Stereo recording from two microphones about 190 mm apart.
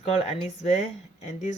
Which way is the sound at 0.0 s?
30° left (ahead or behind).